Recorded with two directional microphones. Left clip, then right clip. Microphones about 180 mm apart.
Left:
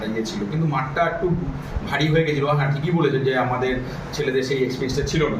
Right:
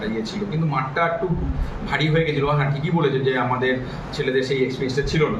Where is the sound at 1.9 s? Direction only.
15° left (ahead or behind).